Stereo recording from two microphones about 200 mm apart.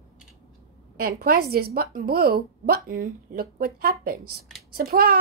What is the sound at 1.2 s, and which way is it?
Speech, 50° right (ahead or behind).